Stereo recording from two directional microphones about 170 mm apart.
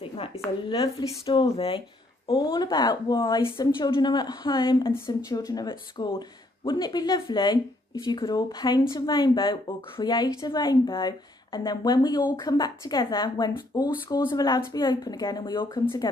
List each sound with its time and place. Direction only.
0.7 s speech: 30° left (ahead or behind)
15.8 s speech: 15° left (ahead or behind)